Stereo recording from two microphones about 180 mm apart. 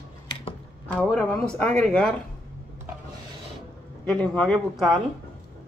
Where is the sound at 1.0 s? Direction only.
5° left (ahead or behind).